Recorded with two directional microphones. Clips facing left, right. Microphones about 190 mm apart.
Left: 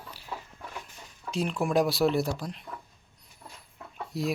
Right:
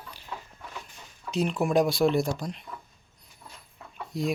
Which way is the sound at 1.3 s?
Centre (ahead or behind).